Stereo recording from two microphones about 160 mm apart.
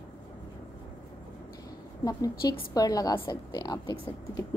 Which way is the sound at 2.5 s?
25° left (ahead or behind).